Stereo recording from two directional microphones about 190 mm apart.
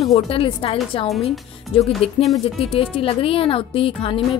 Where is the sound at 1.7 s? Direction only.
35° left (ahead or behind).